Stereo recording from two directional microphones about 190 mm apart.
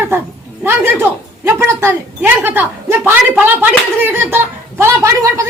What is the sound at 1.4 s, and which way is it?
A woman's voice, 10° right (ahead or behind).